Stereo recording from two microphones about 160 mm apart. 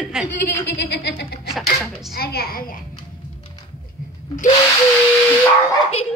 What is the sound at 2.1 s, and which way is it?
Speech, 70° left (ahead or behind).